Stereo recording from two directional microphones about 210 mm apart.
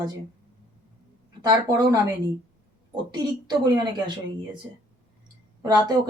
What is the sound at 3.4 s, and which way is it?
Speech, 20° right (ahead or behind).